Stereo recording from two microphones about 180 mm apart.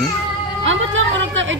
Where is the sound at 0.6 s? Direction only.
90° right.